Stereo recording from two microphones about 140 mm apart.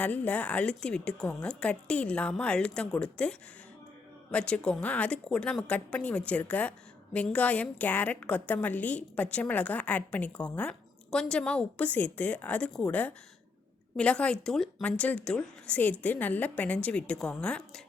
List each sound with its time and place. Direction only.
0.0 s a woman's voice: 10° left (ahead or behind)